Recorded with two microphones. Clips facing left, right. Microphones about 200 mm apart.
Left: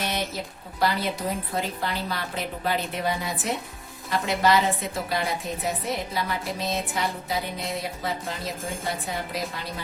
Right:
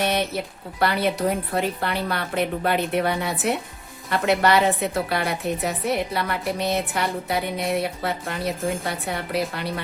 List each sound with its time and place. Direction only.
0.0 s music: 60° right (ahead or behind)
0.8 s a woman's voice: 65° right (ahead or behind)